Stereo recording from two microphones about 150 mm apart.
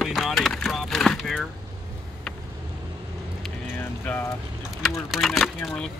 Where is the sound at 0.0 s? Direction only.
Centre (ahead or behind).